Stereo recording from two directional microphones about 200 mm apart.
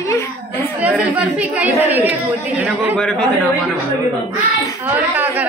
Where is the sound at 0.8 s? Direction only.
5° right (ahead or behind).